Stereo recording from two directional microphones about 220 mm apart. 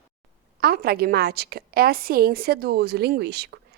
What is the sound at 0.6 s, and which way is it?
A woman's voice, 45° right (ahead or behind).